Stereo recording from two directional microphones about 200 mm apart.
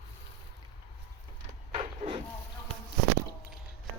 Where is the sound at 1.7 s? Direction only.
25° right (ahead or behind).